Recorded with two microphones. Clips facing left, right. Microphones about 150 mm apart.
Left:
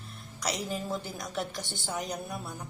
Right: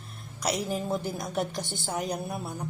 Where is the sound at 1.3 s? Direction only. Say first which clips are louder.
Right 3 dB; 50° right (ahead or behind).